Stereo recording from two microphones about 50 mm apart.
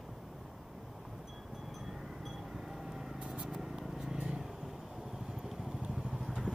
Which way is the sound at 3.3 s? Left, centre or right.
Centre.